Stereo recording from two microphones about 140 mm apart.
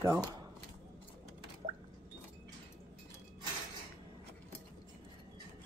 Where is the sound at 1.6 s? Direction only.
60° right (ahead or behind).